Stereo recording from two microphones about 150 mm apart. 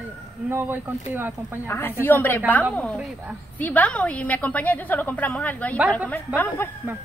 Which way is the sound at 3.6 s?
10° left (ahead or behind).